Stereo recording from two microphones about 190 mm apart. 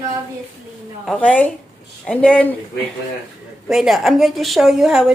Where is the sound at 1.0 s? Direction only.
5° left (ahead or behind).